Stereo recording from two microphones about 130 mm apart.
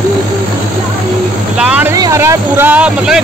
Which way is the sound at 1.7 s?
10° right (ahead or behind).